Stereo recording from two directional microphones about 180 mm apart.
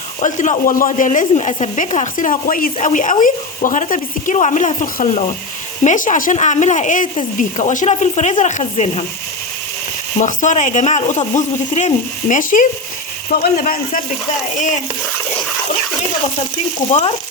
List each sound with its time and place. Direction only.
0.2 s a woman's voice: 45° left (ahead or behind)
10.2 s a woman's voice: 45° left (ahead or behind)
16.9 s speech: 40° left (ahead or behind)